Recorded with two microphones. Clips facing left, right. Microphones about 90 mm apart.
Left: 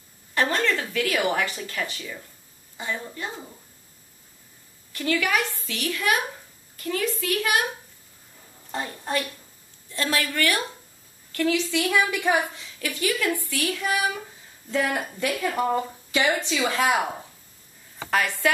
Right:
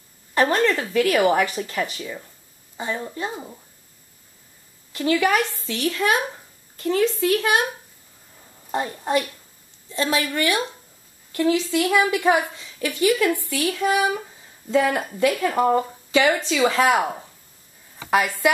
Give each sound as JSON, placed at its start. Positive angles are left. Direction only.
{"t": 0.3, "sound": "a woman's voice", "side_deg": -20}
{"t": 4.9, "sound": "a woman's voice", "side_deg": -25}
{"t": 8.7, "sound": "a woman's voice", "side_deg": -20}
{"t": 16.9, "sound": "speech", "side_deg": -15}